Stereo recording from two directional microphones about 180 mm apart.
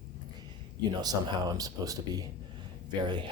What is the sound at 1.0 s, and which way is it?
Speech, 20° right (ahead or behind).